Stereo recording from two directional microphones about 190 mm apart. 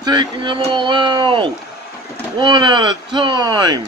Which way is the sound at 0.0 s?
25° right (ahead or behind).